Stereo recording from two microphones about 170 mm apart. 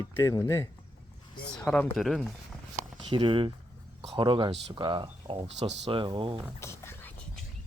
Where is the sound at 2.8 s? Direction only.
25° right (ahead or behind).